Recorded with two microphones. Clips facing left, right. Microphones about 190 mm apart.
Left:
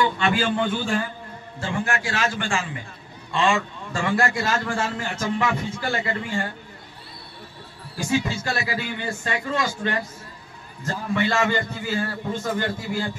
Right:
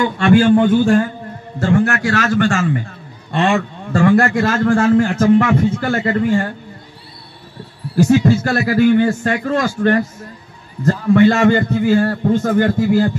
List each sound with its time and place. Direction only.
0.0 s a man's voice: 45° right (ahead or behind)
1.6 s a man's voice: 65° right (ahead or behind); by 6.5 s 50° right (ahead or behind)
8.1 s a man's voice: 55° right (ahead or behind)